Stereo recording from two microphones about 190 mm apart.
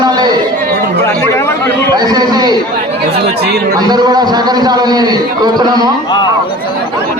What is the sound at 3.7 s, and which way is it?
A man's voice, 20° right (ahead or behind).